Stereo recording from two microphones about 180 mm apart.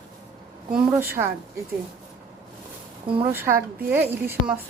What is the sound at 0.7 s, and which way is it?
Speech, 10° right (ahead or behind).